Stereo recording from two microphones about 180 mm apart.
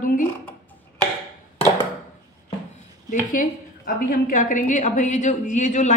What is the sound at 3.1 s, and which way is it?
A woman's voice, 50° left (ahead or behind).